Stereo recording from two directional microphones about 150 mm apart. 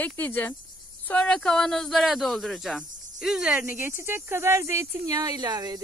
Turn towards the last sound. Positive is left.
turn(degrees=-25)  # may be behind; listen again after turning